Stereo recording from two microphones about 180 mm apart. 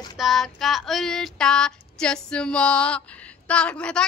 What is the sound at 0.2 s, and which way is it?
Female singing, centre (ahead or behind).